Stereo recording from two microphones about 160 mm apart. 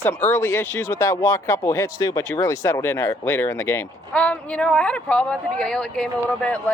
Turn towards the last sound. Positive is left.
turn(degrees=5)  # may be behind; listen again after turning